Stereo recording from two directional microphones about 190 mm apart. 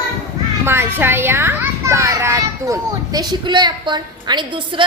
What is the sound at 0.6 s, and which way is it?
A child's voice, 10° right (ahead or behind).